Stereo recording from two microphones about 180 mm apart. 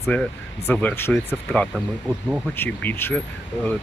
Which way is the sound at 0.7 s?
10° left (ahead or behind).